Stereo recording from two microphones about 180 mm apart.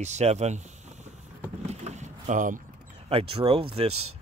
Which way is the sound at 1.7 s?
40° right (ahead or behind).